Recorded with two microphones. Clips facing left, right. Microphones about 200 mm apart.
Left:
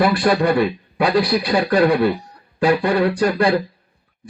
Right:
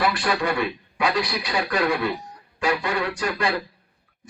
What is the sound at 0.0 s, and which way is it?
A man's voice, 35° left (ahead or behind).